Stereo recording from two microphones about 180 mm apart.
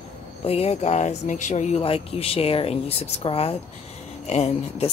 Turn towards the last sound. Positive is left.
turn(degrees=35)  # may be behind; listen again after turning